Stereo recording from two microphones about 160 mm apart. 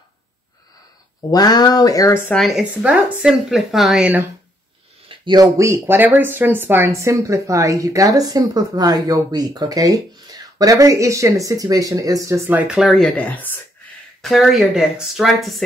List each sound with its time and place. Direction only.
1.3 s speech: 25° left (ahead or behind)
2.3 s speech: centre (ahead or behind)
5.0 s speech: 30° right (ahead or behind); by 15.5 s centre (ahead or behind)